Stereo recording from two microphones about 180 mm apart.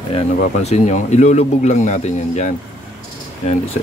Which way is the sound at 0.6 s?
40° left (ahead or behind).